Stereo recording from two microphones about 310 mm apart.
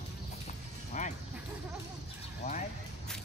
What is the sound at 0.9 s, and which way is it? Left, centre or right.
Bow-wow, left.